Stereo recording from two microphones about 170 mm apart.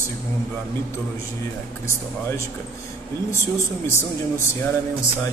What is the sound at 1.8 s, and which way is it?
A man's voice, 15° left (ahead or behind).